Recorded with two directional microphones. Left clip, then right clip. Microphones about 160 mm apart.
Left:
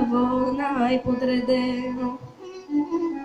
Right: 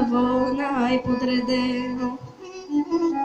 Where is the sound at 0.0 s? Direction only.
40° left (ahead or behind).